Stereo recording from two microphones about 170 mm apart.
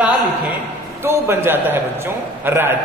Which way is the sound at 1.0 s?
15° right (ahead or behind).